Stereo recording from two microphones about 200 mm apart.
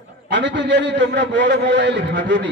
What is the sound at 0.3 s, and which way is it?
A man's voice, 60° right (ahead or behind).